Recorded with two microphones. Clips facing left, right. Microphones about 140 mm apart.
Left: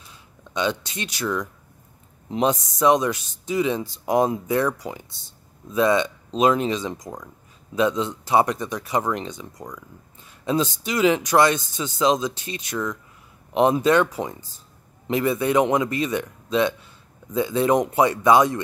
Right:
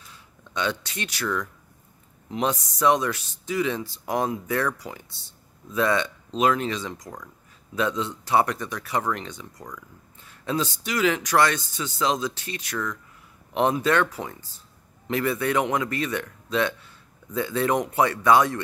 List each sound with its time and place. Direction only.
0.1 s speech: 20° left (ahead or behind)